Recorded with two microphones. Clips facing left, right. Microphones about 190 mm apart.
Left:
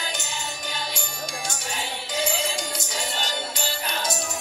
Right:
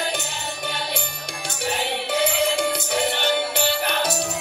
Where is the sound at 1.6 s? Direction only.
65° right (ahead or behind).